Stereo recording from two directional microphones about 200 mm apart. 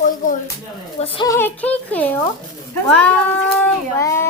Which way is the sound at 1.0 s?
30° left (ahead or behind).